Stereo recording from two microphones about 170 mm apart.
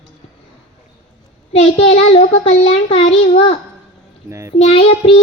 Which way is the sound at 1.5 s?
35° left (ahead or behind).